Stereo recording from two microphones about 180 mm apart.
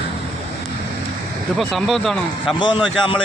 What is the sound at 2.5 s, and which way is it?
Speech, 25° left (ahead or behind).